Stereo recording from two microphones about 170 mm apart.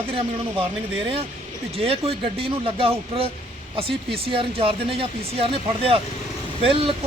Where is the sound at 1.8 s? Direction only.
35° right (ahead or behind).